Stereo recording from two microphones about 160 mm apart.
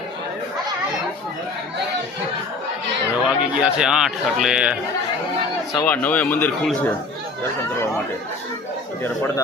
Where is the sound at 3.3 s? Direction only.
5° right (ahead or behind).